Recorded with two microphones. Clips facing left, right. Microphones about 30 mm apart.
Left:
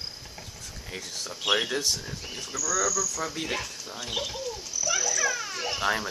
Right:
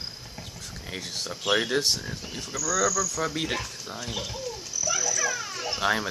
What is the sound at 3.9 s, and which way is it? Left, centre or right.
A child's voice, centre.